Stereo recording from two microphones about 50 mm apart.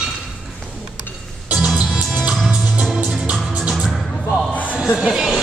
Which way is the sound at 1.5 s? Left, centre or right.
Right.